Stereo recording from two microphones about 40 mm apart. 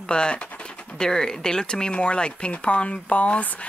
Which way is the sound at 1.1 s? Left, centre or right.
Centre.